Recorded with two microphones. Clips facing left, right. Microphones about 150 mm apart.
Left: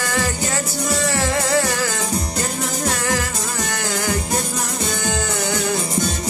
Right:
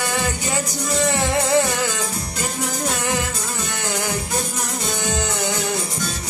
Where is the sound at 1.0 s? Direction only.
20° right (ahead or behind).